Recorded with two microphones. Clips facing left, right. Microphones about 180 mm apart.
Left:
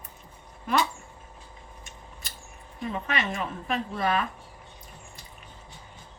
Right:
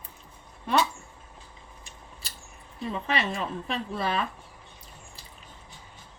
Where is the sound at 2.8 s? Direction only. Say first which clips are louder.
Right 1 dB; 30° right (ahead or behind).